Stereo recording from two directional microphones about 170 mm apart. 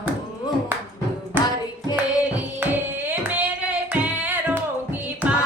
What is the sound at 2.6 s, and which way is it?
Singing, 10° right (ahead or behind).